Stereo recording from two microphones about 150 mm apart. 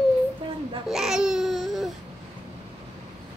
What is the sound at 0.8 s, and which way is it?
Babbling, centre (ahead or behind).